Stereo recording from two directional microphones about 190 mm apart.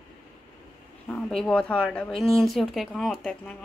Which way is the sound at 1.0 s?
5° left (ahead or behind).